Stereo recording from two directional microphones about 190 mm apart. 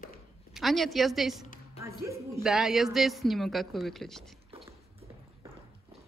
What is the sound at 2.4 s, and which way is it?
A man's voice, centre (ahead or behind).